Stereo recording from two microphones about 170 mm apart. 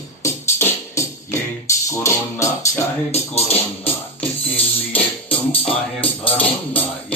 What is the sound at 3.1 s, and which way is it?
Speech, 35° left (ahead or behind).